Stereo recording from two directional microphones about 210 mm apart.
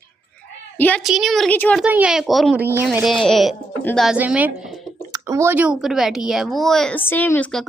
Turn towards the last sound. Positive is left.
turn(degrees=5)  # may be behind; listen again after turning